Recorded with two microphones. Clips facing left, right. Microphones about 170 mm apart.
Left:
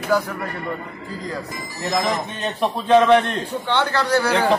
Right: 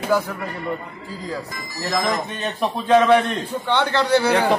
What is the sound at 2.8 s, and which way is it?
A man's voice, 10° right (ahead or behind).